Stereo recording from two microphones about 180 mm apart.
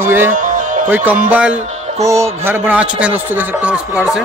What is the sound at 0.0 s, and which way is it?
Music, 10° right (ahead or behind).